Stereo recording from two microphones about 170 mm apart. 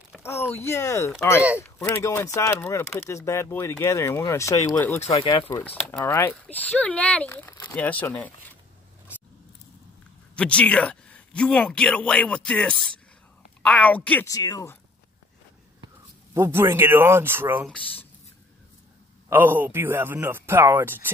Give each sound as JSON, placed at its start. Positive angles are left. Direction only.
{"t": 0.2, "sound": "speech", "side_deg": 15}
{"t": 5.0, "sound": "speech", "side_deg": 35}
{"t": 5.3, "sound": "speech", "side_deg": 15}
{"t": 10.3, "sound": "speech", "side_deg": 5}
{"t": 14.2, "sound": "speech", "side_deg": 20}
{"t": 16.3, "sound": "speech", "side_deg": -15}
{"t": 17.6, "sound": "speech", "side_deg": 5}
{"t": 19.2, "sound": "speech", "side_deg": -15}